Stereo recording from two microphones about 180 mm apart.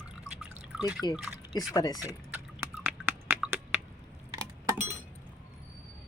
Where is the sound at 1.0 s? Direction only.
20° left (ahead or behind).